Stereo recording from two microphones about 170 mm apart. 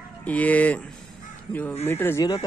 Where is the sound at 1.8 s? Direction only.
10° left (ahead or behind).